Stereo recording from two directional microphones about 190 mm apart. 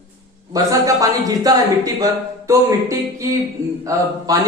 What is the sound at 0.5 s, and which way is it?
Speech, 20° right (ahead or behind).